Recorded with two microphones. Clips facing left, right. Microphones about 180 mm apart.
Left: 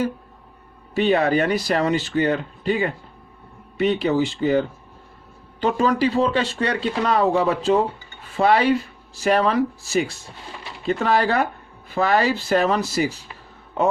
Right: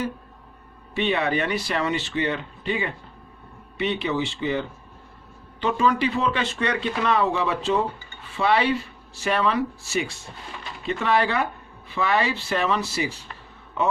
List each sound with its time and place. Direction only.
0.9 s speech: 40° left (ahead or behind)